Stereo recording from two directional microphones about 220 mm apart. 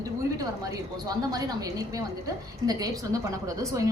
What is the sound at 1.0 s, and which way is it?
A woman's voice, 15° right (ahead or behind).